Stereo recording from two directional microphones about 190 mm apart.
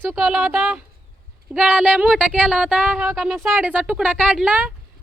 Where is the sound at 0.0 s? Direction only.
Centre (ahead or behind).